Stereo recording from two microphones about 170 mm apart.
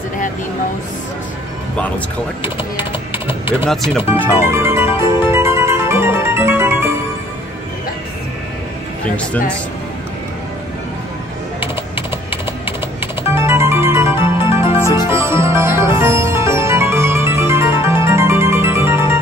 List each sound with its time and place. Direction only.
2.8 s typing: 10° right (ahead or behind)
3.9 s speech: 15° right (ahead or behind)
4.8 s harpsichord: 30° left (ahead or behind)
5.3 s music: 15° right (ahead or behind)
12.3 s music: 15° right (ahead or behind)
14.8 s music: 20° left (ahead or behind)
15.0 s music: 15° right (ahead or behind)